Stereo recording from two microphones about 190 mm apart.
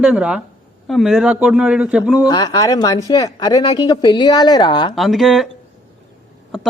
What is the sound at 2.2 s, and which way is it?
Speech, 20° left (ahead or behind).